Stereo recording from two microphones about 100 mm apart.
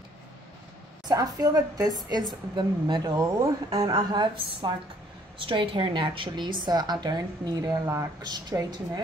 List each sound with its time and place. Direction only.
1.0 s a woman's voice: 35° right (ahead or behind)
3.9 s a woman's voice: 55° right (ahead or behind); by 8.1 s 30° right (ahead or behind)
8.2 s a woman's voice: 45° right (ahead or behind)